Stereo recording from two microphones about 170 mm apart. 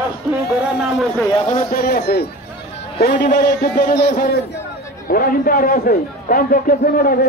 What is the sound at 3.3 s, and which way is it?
Speech, 50° left (ahead or behind).